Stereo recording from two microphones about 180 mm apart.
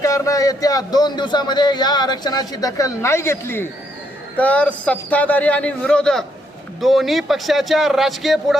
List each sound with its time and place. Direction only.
0.0 s a man's voice: 20° left (ahead or behind); by 8.5 s centre (ahead or behind)